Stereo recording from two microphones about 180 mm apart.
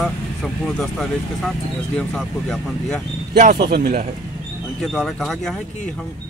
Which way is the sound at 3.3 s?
50° right (ahead or behind).